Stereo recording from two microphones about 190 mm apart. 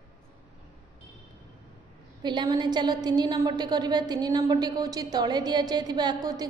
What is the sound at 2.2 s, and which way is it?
A woman's voice, 25° right (ahead or behind).